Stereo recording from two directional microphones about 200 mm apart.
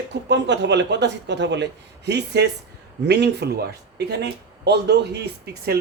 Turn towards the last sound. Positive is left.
turn(degrees=-55)  # may be behind; listen again after turning